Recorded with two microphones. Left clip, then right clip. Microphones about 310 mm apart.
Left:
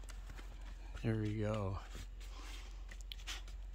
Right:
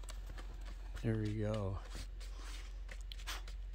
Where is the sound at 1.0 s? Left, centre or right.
Centre.